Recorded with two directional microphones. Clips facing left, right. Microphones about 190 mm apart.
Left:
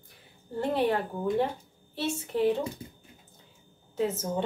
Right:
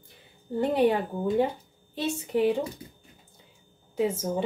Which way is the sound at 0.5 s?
15° right (ahead or behind).